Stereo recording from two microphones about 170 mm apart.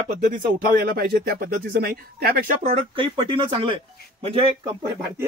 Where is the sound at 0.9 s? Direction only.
65° right (ahead or behind).